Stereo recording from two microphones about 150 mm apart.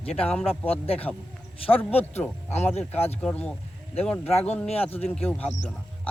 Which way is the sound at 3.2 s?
10° left (ahead or behind).